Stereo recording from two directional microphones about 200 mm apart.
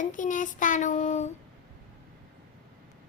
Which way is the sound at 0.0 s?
40° left (ahead or behind).